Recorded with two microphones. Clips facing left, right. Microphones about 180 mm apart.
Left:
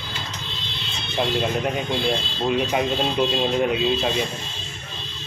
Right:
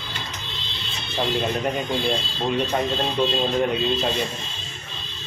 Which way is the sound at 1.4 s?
5° left (ahead or behind).